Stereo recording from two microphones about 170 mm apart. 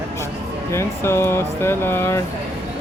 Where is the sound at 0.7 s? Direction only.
15° left (ahead or behind).